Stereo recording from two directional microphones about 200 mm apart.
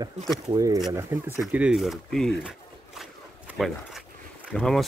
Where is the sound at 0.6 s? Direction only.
15° right (ahead or behind); by 2.5 s centre (ahead or behind).